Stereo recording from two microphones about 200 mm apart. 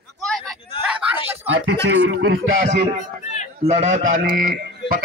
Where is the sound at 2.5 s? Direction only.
35° right (ahead or behind).